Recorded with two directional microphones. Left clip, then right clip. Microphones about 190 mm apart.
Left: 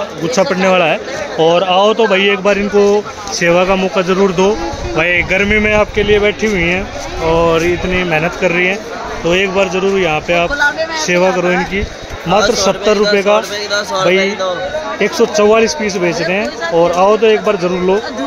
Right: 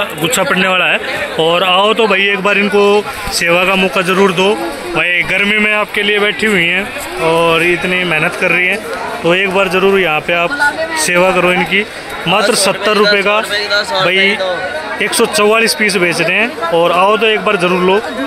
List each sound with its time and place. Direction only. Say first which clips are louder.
0.2 s speech: left 1 dB; 5° right (ahead or behind)
7.2 s music: right 1 dB; centre (ahead or behind)
9.2 s speech: right 1 dB; centre (ahead or behind)
13.7 s speech: right 2 dB; 55° left (ahead or behind)
14.0 s speech: even; centre (ahead or behind)